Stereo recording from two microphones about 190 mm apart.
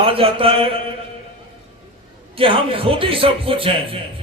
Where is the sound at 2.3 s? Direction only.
30° right (ahead or behind).